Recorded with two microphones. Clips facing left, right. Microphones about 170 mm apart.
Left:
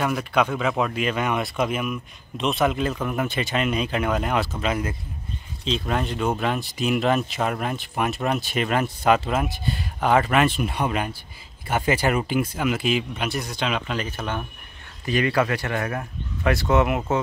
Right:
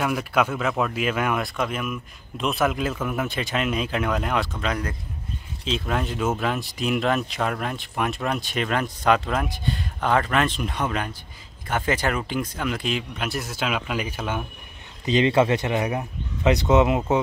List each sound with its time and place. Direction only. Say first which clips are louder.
0.0 s speech: even; 5° right (ahead or behind)
15.0 s speech: right 3 dB; 20° right (ahead or behind)